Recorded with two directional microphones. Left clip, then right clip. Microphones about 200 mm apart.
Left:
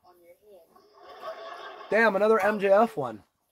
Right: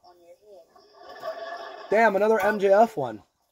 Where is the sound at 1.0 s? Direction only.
25° left (ahead or behind).